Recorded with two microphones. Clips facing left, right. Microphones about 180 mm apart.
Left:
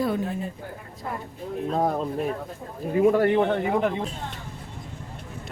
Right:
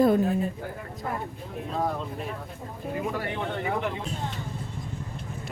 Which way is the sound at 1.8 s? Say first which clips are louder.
Left 4 dB; 45° left (ahead or behind).